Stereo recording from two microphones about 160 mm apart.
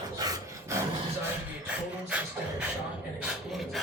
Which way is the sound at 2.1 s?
5° right (ahead or behind).